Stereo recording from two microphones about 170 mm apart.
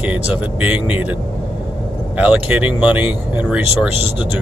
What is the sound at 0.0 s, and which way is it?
Speech, 5° right (ahead or behind).